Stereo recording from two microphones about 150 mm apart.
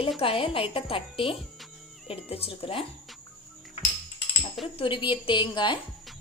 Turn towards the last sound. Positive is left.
turn(degrees=30)  # may be behind; listen again after turning